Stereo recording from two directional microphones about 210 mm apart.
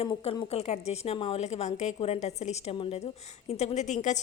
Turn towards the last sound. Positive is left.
turn(degrees=35)  # may be behind; listen again after turning